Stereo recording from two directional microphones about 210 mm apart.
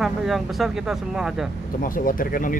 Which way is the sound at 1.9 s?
40° left (ahead or behind).